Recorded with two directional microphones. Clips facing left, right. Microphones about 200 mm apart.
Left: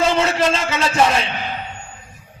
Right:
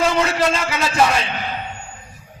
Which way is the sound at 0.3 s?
25° left (ahead or behind).